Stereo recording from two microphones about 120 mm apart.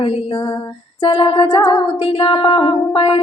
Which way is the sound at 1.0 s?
45° left (ahead or behind).